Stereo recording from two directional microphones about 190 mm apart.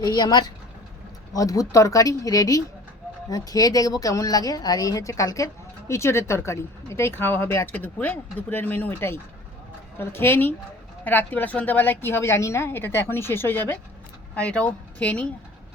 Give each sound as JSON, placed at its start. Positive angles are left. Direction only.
{"t": 0.0, "sound": "speech", "side_deg": 20}